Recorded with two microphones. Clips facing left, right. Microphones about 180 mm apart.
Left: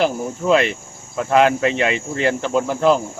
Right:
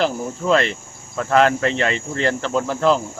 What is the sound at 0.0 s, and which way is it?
Cricket, 10° left (ahead or behind).